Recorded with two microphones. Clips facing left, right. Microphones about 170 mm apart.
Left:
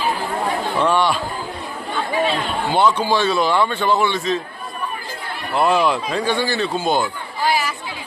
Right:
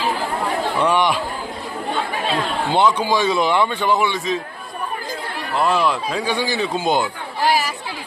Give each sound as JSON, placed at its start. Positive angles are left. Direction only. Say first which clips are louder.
{"t": 0.8, "sound": "speech", "louder": "even", "side_deg": -15}
{"t": 2.7, "sound": "speech", "louder": "even", "side_deg": -15}
{"t": 5.5, "sound": "speech", "louder": "left 2 dB", "side_deg": 0}